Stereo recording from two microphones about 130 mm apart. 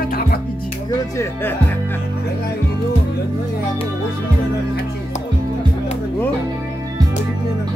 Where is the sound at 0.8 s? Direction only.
25° left (ahead or behind).